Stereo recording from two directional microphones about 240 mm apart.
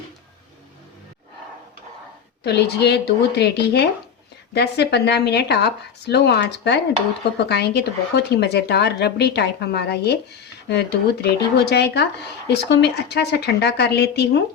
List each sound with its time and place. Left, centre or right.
2.4 s speech: left